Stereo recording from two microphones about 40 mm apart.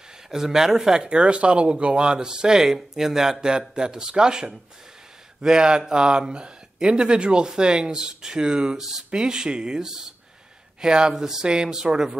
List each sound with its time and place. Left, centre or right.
0.3 s speech: centre
1.0 s speech: right